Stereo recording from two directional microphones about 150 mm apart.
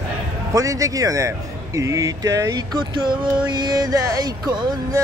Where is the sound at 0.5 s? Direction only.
20° right (ahead or behind).